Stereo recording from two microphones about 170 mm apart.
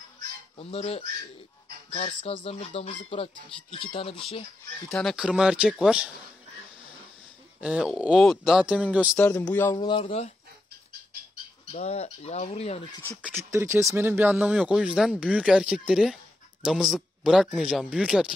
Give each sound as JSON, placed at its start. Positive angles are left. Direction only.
{"t": 0.6, "sound": "speech", "side_deg": 35}
{"t": 4.9, "sound": "speech", "side_deg": 0}
{"t": 7.6, "sound": "speech", "side_deg": -5}
{"t": 9.2, "sound": "a man's voice", "side_deg": 10}
{"t": 9.7, "sound": "speech", "side_deg": 25}
{"t": 11.7, "sound": "speech", "side_deg": 40}
{"t": 13.5, "sound": "speech", "side_deg": -15}